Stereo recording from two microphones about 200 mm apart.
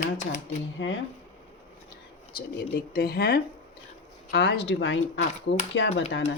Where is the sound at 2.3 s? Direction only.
50° left (ahead or behind); by 5.9 s 70° left (ahead or behind).